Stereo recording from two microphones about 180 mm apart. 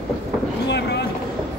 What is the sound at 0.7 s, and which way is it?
Vehicle, 70° left (ahead or behind).